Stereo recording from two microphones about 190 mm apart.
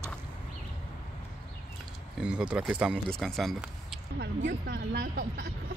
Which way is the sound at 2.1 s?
5° right (ahead or behind).